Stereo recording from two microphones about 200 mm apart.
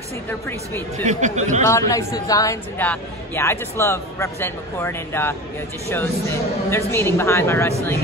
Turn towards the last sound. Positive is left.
turn(degrees=15)  # may be behind; listen again after turning